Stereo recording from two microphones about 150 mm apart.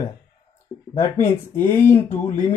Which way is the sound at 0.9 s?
15° left (ahead or behind).